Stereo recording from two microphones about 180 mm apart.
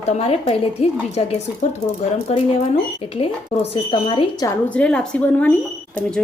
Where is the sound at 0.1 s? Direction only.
35° left (ahead or behind).